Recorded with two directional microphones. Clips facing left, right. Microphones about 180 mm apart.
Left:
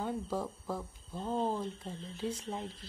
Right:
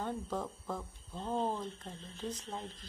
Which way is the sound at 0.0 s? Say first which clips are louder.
Left 2 dB; 5° left (ahead or behind).